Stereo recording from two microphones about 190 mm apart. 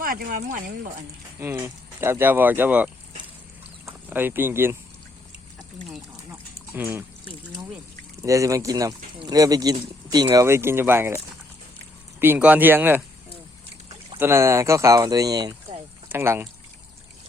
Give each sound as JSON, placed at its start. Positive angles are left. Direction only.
{"t": 0.0, "sound": "speech", "side_deg": -50}
{"t": 1.4, "sound": "speech", "side_deg": -15}
{"t": 6.7, "sound": "speech", "side_deg": -10}
{"t": 12.2, "sound": "speech", "side_deg": -10}
{"t": 14.2, "sound": "speech", "side_deg": -15}